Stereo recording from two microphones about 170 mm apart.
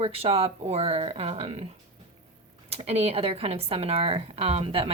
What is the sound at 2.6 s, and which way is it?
Speech, 35° right (ahead or behind).